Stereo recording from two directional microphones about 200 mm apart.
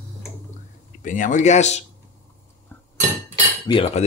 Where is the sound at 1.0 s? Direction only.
40° left (ahead or behind).